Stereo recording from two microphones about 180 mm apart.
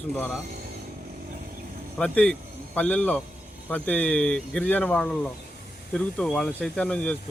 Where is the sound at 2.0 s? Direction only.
5° left (ahead or behind).